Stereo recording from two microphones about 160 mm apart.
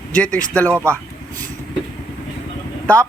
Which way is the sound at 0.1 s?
5° left (ahead or behind).